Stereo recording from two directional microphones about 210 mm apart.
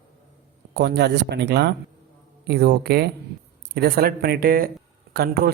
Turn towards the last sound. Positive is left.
turn(degrees=-50)  # may be behind; listen again after turning